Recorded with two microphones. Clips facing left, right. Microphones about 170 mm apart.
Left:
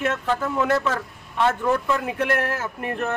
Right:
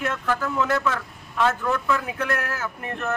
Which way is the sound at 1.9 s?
25° left (ahead or behind).